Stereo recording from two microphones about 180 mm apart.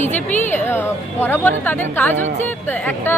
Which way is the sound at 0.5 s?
10° left (ahead or behind).